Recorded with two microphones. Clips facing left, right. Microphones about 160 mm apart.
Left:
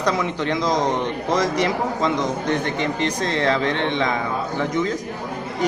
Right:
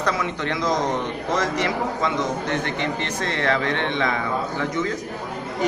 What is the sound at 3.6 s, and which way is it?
Speech, 20° left (ahead or behind).